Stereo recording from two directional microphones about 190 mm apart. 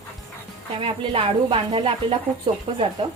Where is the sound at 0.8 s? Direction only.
30° right (ahead or behind).